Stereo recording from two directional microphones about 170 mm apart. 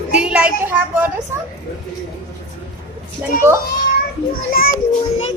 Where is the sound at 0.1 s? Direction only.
5° right (ahead or behind).